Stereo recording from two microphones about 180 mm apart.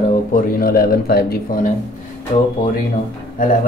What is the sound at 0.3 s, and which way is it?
Speech, 50° left (ahead or behind).